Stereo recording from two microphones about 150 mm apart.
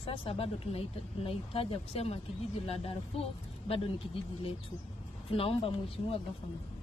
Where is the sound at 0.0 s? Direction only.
40° left (ahead or behind).